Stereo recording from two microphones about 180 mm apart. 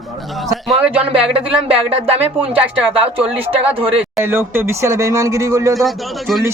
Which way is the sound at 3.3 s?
30° right (ahead or behind).